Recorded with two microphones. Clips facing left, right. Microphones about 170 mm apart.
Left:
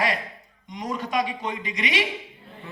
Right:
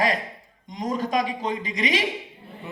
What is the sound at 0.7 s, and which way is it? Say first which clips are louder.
Speech: right 3 dB; 45° right (ahead or behind).